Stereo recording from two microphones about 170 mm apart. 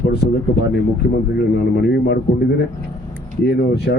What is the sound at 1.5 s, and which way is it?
A man's voice, 70° left (ahead or behind).